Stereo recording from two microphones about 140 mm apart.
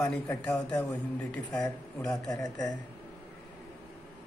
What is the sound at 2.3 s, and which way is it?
Speech, 25° left (ahead or behind).